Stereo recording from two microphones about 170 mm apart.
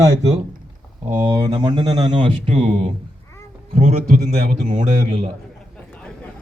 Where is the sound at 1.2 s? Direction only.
25° right (ahead or behind); by 5.2 s 40° right (ahead or behind).